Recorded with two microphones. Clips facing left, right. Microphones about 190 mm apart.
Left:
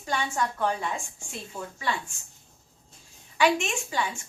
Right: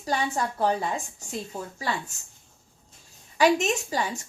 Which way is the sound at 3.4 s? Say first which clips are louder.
Right 3 dB; 40° right (ahead or behind).